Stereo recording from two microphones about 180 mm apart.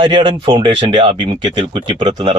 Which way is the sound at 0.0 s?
25° right (ahead or behind).